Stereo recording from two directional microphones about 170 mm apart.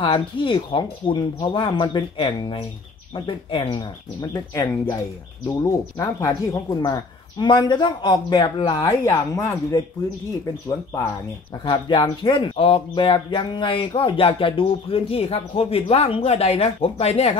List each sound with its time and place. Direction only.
0.0 s speech: 30° left (ahead or behind)
11.6 s speech: 25° left (ahead or behind)